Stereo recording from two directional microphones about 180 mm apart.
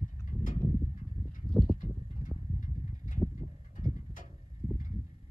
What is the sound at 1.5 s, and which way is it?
Horse, centre (ahead or behind).